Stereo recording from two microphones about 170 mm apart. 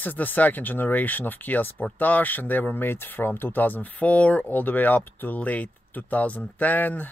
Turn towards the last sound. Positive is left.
turn(degrees=10)  # may be behind; listen again after turning